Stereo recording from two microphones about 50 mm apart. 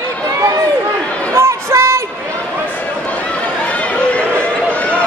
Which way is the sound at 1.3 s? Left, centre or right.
Right.